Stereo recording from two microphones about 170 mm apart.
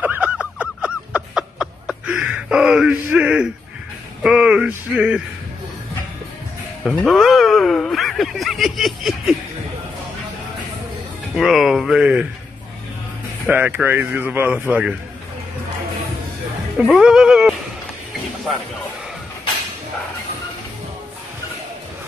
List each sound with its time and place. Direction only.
0.0 s a sound: 10° right (ahead or behind)
4.2 s speech: 5° right (ahead or behind)
6.8 s speech: centre (ahead or behind)
11.3 s speech: centre (ahead or behind)
13.5 s speech: 10° right (ahead or behind)
16.7 s speech: 5° right (ahead or behind)